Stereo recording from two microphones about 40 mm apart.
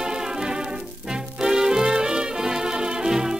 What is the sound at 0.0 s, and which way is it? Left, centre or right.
Music, centre.